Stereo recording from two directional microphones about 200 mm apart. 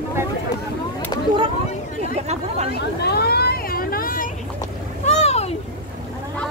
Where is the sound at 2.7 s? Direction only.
55° left (ahead or behind).